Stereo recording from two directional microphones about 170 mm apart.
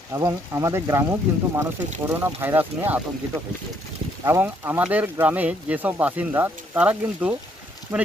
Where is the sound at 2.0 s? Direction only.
15° right (ahead or behind).